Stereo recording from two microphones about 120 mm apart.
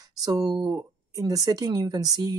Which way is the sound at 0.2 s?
30° right (ahead or behind).